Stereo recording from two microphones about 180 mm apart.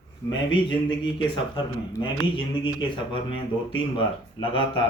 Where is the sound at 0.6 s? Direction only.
25° left (ahead or behind).